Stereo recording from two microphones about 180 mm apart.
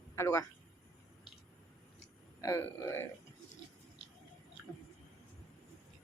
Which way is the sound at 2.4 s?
15° left (ahead or behind).